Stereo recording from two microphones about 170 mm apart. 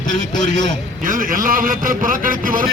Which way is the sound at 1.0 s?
55° right (ahead or behind).